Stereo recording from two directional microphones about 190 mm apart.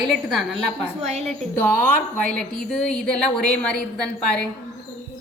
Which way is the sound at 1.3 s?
5° left (ahead or behind).